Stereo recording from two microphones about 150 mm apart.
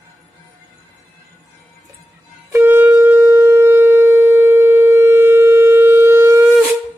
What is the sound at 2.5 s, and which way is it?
Shofar, 15° right (ahead or behind).